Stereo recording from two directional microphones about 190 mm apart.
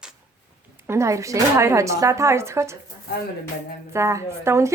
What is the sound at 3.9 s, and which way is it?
Speech, 15° right (ahead or behind).